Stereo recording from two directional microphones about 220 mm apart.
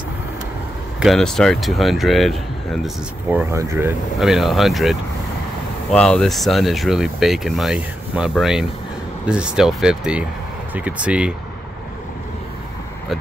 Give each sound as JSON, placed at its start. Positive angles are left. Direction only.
{"t": 0.9, "sound": "speech", "side_deg": 0}